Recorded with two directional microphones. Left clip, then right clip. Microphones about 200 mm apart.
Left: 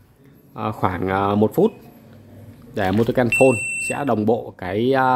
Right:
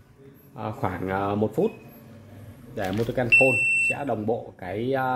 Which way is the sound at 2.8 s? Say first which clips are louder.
Left 7 dB; 45° left (ahead or behind).